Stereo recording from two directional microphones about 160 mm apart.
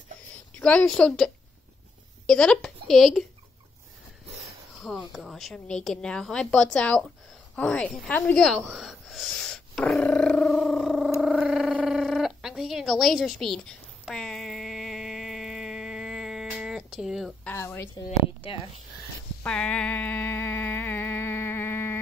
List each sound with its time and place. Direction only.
0.6 s a woman's voice: 5° left (ahead or behind)
4.8 s a woman's voice: centre (ahead or behind)
11.1 s a sound: centre (ahead or behind)
17.5 s speech: 15° left (ahead or behind)
18.4 s speech: 35° left (ahead or behind)
18.9 s a sound: 5° left (ahead or behind)